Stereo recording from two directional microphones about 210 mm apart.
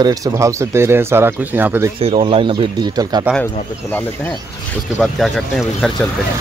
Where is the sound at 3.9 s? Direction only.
10° left (ahead or behind).